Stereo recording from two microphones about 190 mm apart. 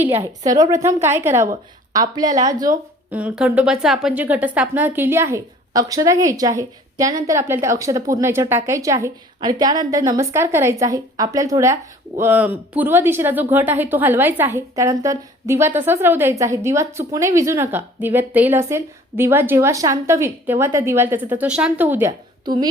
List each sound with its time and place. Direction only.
0.0 s a woman's voice: 15° right (ahead or behind)
3.2 s speech: 5° right (ahead or behind)